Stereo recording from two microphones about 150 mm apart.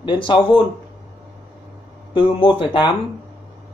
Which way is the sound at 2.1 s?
35° left (ahead or behind).